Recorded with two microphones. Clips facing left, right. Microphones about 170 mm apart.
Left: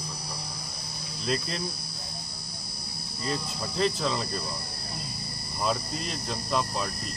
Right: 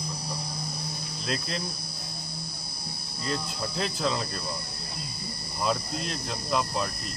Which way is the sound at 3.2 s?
Centre (ahead or behind).